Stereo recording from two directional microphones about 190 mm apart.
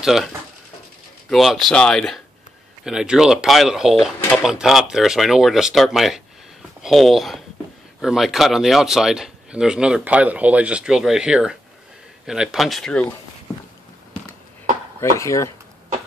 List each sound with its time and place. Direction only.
0.0 s speech: centre (ahead or behind)
1.3 s speech: centre (ahead or behind)
15.0 s speech: 15° left (ahead or behind)